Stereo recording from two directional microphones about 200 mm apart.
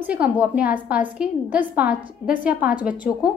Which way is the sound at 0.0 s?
5° right (ahead or behind).